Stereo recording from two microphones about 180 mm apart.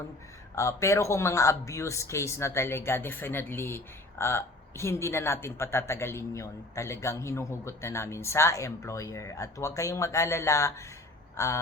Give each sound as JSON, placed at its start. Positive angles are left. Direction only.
{"t": 0.5, "sound": "a woman's voice", "side_deg": 15}